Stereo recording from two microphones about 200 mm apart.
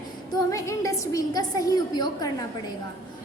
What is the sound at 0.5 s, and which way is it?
A woman's voice, 15° left (ahead or behind).